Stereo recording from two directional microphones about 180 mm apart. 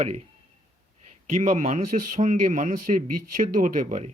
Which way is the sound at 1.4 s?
40° right (ahead or behind).